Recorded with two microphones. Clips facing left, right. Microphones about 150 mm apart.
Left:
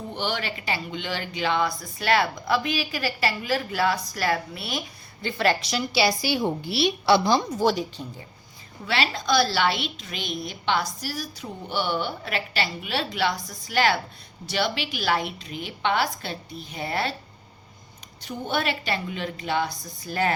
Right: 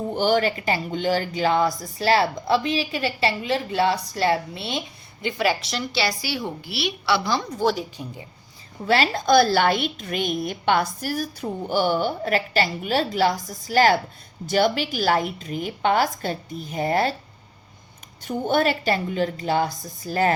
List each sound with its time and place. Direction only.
0.1 s a woman's voice: 45° right (ahead or behind); by 4.8 s 25° right (ahead or behind)
5.2 s a woman's voice: 10° right (ahead or behind)
5.9 s a woman's voice: 15° left (ahead or behind)
6.8 s a woman's voice: 45° left (ahead or behind)
7.5 s a woman's voice: centre (ahead or behind)
8.9 s a woman's voice: 45° right (ahead or behind)
18.3 s speech: 45° right (ahead or behind)